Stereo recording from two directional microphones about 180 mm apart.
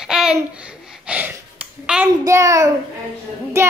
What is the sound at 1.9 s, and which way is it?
Speech, 10° right (ahead or behind).